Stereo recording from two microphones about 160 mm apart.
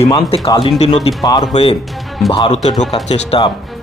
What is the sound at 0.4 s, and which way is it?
Speech, 25° left (ahead or behind).